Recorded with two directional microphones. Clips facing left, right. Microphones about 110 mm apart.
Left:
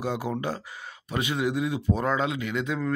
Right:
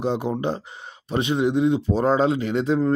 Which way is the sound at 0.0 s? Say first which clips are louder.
Right 5 dB; 25° right (ahead or behind).